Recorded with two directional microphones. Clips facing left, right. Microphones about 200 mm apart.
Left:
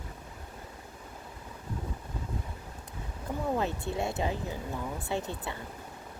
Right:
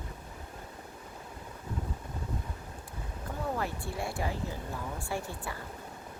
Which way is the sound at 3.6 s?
20° left (ahead or behind).